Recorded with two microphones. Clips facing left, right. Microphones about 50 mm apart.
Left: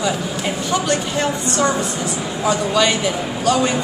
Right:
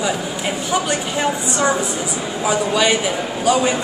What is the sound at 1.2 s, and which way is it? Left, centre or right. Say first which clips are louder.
A woman's voice: right 3 dB; centre.